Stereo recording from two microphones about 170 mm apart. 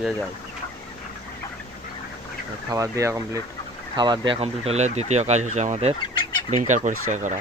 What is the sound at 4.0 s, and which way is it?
Speech, 30° right (ahead or behind).